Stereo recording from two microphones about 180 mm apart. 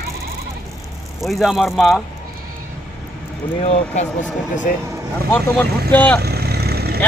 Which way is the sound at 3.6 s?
35° left (ahead or behind).